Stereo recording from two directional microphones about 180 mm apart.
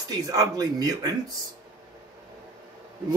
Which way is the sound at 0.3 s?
20° right (ahead or behind).